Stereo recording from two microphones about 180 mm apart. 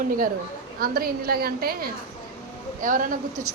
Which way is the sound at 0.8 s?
55° right (ahead or behind).